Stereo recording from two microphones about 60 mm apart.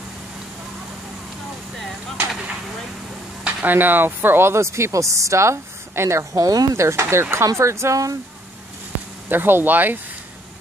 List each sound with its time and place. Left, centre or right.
3.4 s speech: right
6.7 s speech: right
7.4 s speech: right
9.3 s speech: right